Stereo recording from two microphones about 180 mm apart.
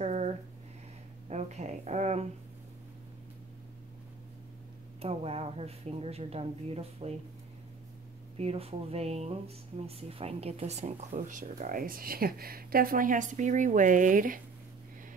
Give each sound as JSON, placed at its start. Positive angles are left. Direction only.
{"t": 0.0, "sound": "a sound", "side_deg": -40}
{"t": 1.3, "sound": "speech", "side_deg": -40}
{"t": 5.0, "sound": "speech", "side_deg": -35}
{"t": 8.4, "sound": "speech", "side_deg": -35}